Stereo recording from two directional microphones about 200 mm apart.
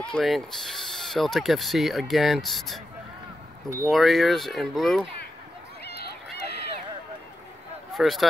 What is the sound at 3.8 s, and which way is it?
Speech, centre (ahead or behind).